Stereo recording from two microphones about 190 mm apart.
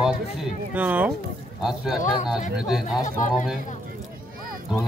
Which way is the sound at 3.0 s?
40° left (ahead or behind).